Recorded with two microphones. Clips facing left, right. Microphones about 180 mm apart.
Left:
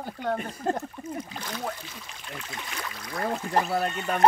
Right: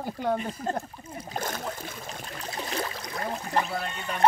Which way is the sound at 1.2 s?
45° right (ahead or behind).